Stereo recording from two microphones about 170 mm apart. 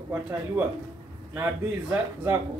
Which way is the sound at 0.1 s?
10° right (ahead or behind).